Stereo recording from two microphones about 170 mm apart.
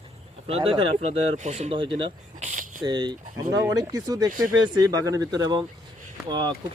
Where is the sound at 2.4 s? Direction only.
50° right (ahead or behind).